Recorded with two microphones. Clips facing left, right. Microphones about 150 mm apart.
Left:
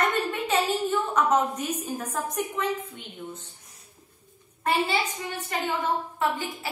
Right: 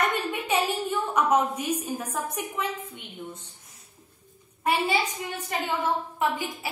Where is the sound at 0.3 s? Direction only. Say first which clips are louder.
Left 1 dB; 10° right (ahead or behind).